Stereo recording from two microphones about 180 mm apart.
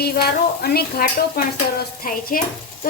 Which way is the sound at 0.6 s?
55° left (ahead or behind).